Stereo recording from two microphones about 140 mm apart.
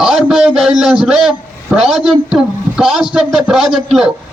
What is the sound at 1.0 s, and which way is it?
A man's voice, 5° right (ahead or behind).